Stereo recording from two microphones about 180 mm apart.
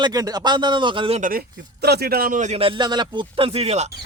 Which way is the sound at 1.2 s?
55° right (ahead or behind).